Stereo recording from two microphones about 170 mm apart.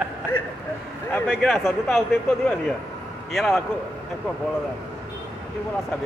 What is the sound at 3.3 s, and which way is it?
Speech, centre (ahead or behind).